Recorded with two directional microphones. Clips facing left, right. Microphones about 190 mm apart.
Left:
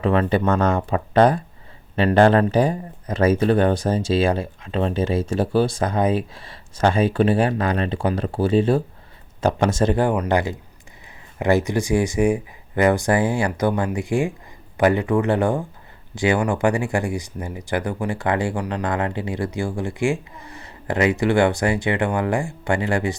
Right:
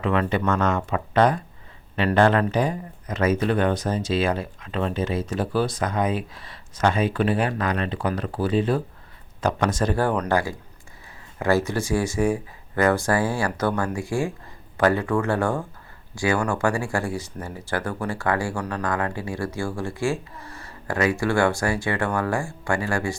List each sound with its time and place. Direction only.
0.0 s speech: 35° left (ahead or behind)